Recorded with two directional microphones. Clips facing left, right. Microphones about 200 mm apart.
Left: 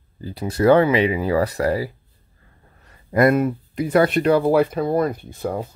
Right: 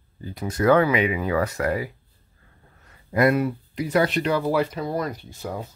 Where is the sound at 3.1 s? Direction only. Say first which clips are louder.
Left 3 dB; 50° left (ahead or behind).